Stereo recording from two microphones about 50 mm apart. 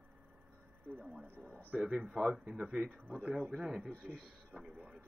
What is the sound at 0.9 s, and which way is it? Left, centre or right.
Speech, right.